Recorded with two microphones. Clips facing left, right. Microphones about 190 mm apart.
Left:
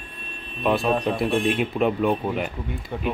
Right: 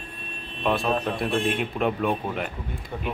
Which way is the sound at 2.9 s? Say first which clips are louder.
Left 3 dB; 15° left (ahead or behind).